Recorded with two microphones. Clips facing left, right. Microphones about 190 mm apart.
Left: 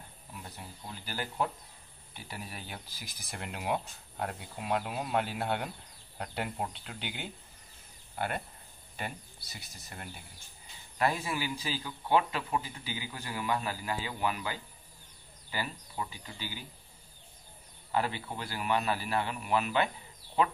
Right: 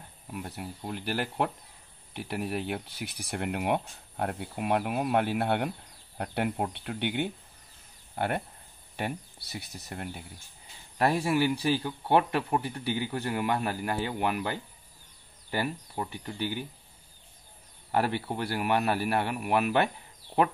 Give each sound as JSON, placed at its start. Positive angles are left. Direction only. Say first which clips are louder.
{"t": 0.3, "sound": "a man's voice", "louder": "right 9 dB", "side_deg": -65}
{"t": 8.9, "sound": "a man's voice", "louder": "right 7 dB", "side_deg": -65}
{"t": 11.3, "sound": "a man's voice", "louder": "right 10 dB", "side_deg": -60}
{"t": 17.9, "sound": "a man's voice", "louder": "right 4 dB", "side_deg": -60}